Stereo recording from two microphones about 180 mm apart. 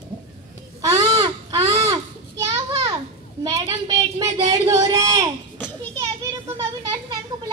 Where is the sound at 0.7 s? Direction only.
20° right (ahead or behind).